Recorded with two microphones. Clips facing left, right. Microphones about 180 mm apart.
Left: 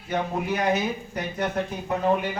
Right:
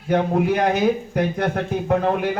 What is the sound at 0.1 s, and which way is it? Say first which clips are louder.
A man's voice: right 8 dB; 55° right (ahead or behind).